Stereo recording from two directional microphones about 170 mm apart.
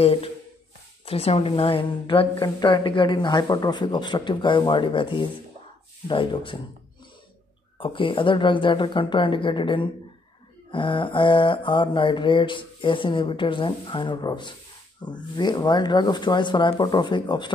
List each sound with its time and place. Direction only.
0.0 s a woman's voice: 35° left (ahead or behind)
2.3 s mantra: 25° left (ahead or behind)
7.8 s mantra: 30° left (ahead or behind)